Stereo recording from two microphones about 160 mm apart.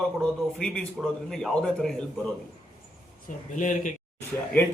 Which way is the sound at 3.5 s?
55° left (ahead or behind).